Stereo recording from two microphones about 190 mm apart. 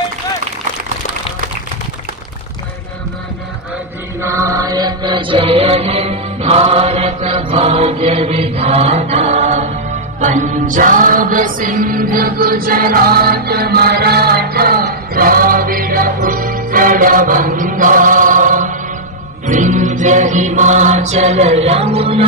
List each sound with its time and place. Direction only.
4.2 s music: 15° right (ahead or behind); by 18.8 s 45° right (ahead or behind)
19.4 s mantra: 40° right (ahead or behind)